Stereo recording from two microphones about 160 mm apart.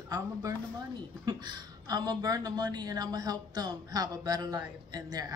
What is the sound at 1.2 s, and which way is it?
A woman's voice, 25° right (ahead or behind).